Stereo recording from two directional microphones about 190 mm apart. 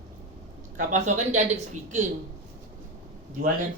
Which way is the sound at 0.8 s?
40° right (ahead or behind).